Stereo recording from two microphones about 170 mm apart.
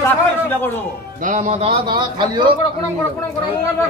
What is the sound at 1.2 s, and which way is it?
Speech, 50° right (ahead or behind).